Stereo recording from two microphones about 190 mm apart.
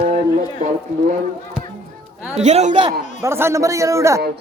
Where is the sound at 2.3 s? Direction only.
35° right (ahead or behind).